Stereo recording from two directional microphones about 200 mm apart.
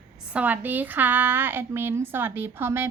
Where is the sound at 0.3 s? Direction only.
10° right (ahead or behind).